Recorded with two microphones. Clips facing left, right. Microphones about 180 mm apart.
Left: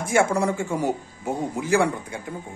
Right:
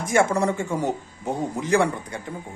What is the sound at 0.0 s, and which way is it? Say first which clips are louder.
A man's voice: even; 10° left (ahead or behind).